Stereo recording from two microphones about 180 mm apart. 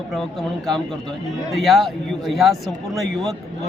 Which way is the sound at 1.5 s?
Centre (ahead or behind).